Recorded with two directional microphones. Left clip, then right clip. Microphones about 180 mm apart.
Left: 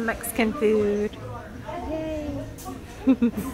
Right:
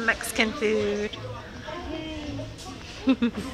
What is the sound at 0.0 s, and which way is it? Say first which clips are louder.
A woman's voice: right 1 dB; 15° left (ahead or behind).